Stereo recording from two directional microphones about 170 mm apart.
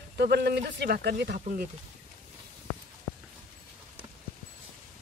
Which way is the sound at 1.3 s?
50° right (ahead or behind).